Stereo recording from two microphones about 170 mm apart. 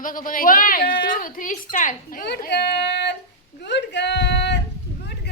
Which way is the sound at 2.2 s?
75° left (ahead or behind).